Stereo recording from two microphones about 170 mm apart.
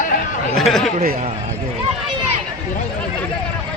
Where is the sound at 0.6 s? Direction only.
Centre (ahead or behind).